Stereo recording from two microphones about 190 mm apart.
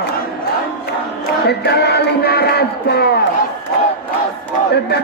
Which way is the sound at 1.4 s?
60° left (ahead or behind).